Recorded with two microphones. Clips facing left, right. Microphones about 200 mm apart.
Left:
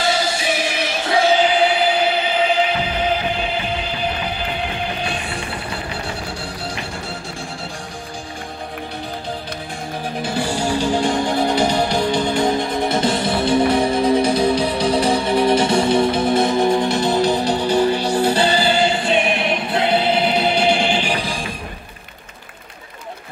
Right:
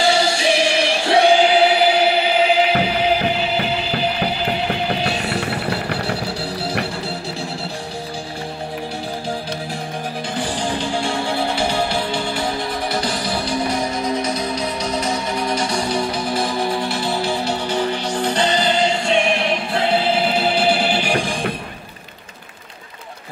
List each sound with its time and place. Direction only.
0.0 s music: 25° right (ahead or behind)
1.3 s music: 10° right (ahead or behind)
5.0 s music: 70° right (ahead or behind)
10.2 s music: 10° left (ahead or behind); by 21.1 s 5° right (ahead or behind)
21.1 s music: 50° right (ahead or behind)